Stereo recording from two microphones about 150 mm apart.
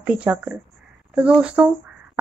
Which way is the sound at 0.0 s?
10° right (ahead or behind).